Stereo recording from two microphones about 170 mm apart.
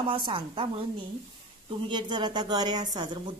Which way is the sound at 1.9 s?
25° right (ahead or behind).